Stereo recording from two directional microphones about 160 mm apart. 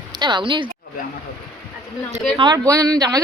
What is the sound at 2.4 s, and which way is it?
Speech, 25° right (ahead or behind).